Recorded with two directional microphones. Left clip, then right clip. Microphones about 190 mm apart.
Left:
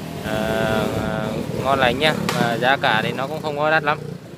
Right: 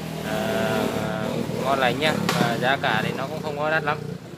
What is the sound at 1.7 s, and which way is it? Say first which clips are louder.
Speech: left 4 dB; 45° left (ahead or behind).